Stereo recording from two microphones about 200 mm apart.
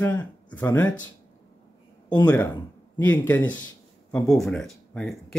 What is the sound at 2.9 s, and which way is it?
Speech, 10° left (ahead or behind).